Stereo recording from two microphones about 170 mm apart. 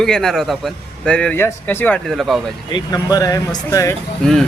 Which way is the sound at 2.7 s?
20° left (ahead or behind).